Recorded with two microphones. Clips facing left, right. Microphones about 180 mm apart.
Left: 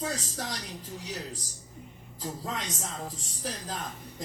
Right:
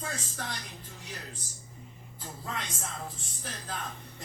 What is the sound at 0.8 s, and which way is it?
Speech, 90° left.